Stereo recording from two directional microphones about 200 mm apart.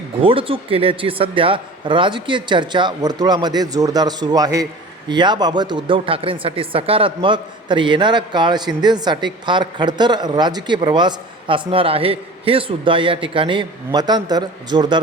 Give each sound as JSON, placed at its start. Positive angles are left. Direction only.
{"t": 0.2, "sound": "speech", "side_deg": -25}